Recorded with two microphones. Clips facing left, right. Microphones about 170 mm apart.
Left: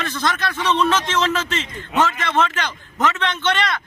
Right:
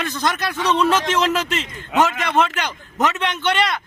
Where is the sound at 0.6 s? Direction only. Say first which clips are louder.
Right 1 dB; 40° right (ahead or behind).